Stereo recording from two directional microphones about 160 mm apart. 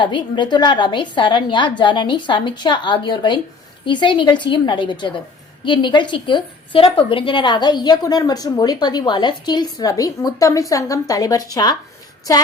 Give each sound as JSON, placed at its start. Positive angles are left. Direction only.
{"t": 0.0, "sound": "a woman's voice", "side_deg": 30}